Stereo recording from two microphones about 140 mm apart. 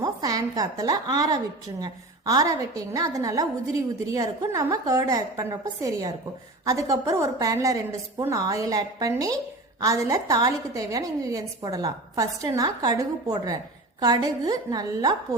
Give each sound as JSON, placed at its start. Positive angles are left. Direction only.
{"t": 0.0, "sound": "a woman's voice", "side_deg": -25}